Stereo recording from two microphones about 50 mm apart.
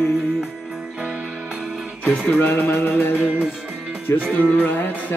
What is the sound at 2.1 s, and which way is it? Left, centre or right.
Music, left.